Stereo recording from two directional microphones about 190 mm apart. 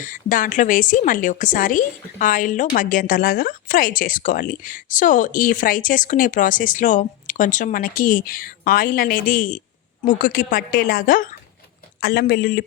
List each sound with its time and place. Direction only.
0.0 s speech: 45° left (ahead or behind)
11.9 s speech: 55° left (ahead or behind)